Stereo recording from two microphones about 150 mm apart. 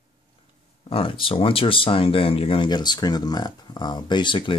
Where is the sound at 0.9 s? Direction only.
35° left (ahead or behind).